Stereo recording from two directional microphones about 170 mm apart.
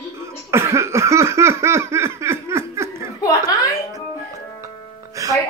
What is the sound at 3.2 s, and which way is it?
Speech, 20° left (ahead or behind).